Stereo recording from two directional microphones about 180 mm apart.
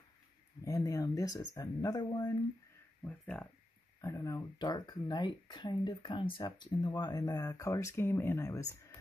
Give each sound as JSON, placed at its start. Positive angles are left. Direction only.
{"t": 0.7, "sound": "speech", "side_deg": 20}
{"t": 3.0, "sound": "speech", "side_deg": 5}
{"t": 4.0, "sound": "speech", "side_deg": 20}